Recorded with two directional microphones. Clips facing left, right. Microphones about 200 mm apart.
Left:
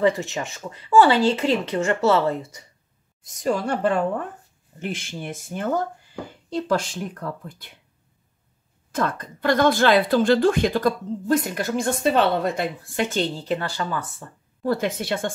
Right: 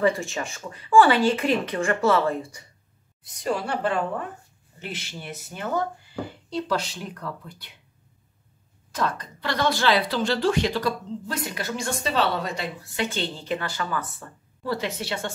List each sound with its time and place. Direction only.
0.0 s speech: 20° left (ahead or behind)
3.3 s a woman's voice: 45° left (ahead or behind)
8.9 s a woman's voice: 50° left (ahead or behind); by 14.0 s 35° left (ahead or behind)
14.6 s a woman's voice: 50° left (ahead or behind)